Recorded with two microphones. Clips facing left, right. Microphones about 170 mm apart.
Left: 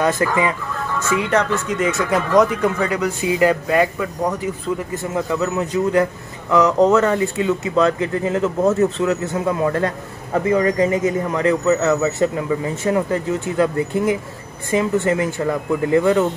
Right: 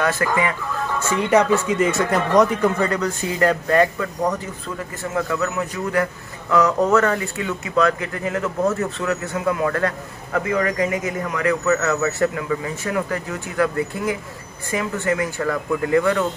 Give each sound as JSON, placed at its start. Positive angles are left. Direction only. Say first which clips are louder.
{"t": 0.0, "sound": "speech", "louder": "left 3 dB", "side_deg": 20}
{"t": 1.3, "sound": "speech", "louder": "right 6 dB", "side_deg": -10}
{"t": 1.8, "sound": "speech", "louder": "even", "side_deg": 0}
{"t": 5.1, "sound": "speech", "louder": "left 2 dB", "side_deg": 20}